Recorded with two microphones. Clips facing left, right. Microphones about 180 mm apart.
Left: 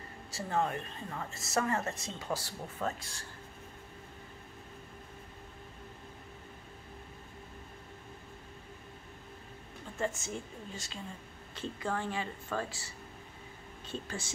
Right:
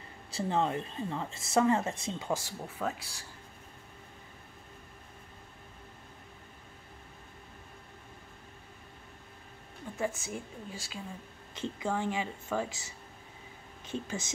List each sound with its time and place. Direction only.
0.4 s speech: 25° right (ahead or behind)
9.9 s speech: 10° right (ahead or behind)
13.8 s speech: 15° right (ahead or behind)